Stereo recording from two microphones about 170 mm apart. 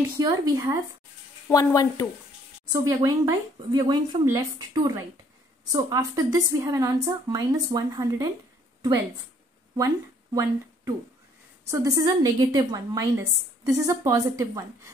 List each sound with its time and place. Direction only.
0.2 s speech: 20° right (ahead or behind)
1.5 s speech: 20° left (ahead or behind)
2.7 s speech: 20° right (ahead or behind)
9.8 s a woman's voice: 20° right (ahead or behind)